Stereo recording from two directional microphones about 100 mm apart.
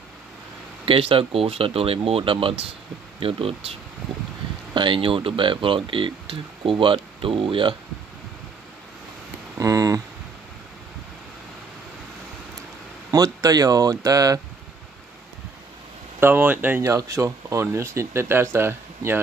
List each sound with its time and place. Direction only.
0.8 s speech: 65° right (ahead or behind)
4.7 s speech: 60° right (ahead or behind)
9.6 s a sound: 35° right (ahead or behind)
13.1 s speech: 40° right (ahead or behind)
16.2 s speech: 20° right (ahead or behind)
16.8 s speech: 30° right (ahead or behind)